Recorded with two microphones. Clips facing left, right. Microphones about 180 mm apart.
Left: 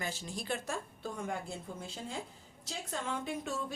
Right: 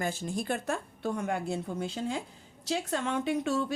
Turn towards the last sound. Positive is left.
turn(degrees=-80)